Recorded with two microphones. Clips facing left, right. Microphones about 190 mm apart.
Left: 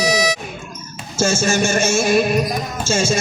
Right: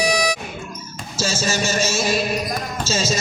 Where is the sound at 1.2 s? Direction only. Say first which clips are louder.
Left 5 dB; 50° left (ahead or behind).